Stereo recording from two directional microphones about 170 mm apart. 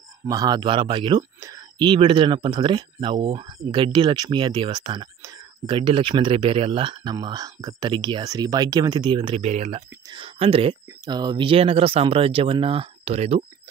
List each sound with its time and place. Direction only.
0.3 s speech: 25° right (ahead or behind)